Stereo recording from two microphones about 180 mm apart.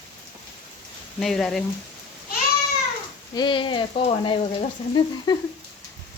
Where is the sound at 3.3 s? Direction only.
25° left (ahead or behind).